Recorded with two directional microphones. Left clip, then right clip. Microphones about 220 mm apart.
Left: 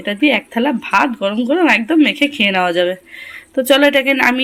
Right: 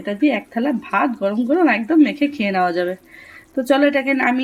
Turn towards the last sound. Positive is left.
turn(degrees=5)  # may be behind; listen again after turning